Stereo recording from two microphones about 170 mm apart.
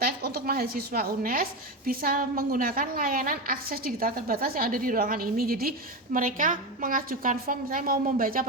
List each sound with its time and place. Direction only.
0.0 s a woman's voice: 65° right (ahead or behind)